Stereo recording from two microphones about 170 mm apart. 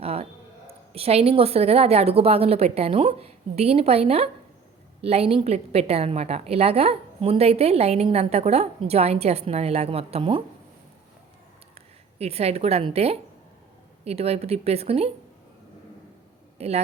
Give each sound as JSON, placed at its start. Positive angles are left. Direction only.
{"t": 0.0, "sound": "a sound", "side_deg": -35}
{"t": 0.9, "sound": "a woman's voice", "side_deg": -35}
{"t": 12.2, "sound": "a woman's voice", "side_deg": -35}
{"t": 16.6, "sound": "speech", "side_deg": -40}